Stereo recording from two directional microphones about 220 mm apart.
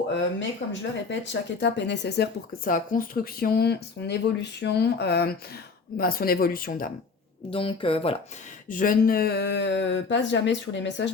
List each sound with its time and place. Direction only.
0.1 s speech: 55° left (ahead or behind)
7.5 s a woman's voice: 25° left (ahead or behind)
8.7 s speech: 40° left (ahead or behind); by 11.1 s 55° left (ahead or behind)